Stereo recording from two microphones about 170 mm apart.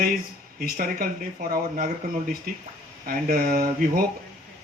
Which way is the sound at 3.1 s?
60° right (ahead or behind).